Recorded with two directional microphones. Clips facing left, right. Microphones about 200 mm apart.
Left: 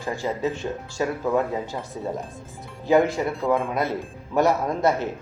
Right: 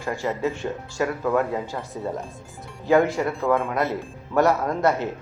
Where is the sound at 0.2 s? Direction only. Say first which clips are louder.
Even; 20° left (ahead or behind).